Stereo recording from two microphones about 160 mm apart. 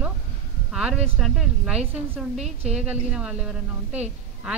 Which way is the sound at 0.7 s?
5° right (ahead or behind).